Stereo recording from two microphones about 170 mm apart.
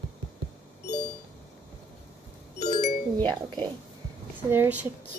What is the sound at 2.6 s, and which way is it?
Doorbell, 45° left (ahead or behind).